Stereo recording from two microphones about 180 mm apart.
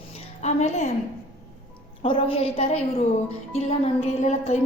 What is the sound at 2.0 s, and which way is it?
A woman's voice, 30° left (ahead or behind).